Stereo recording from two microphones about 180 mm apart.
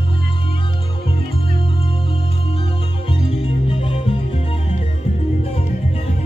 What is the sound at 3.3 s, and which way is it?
Music, 30° left (ahead or behind).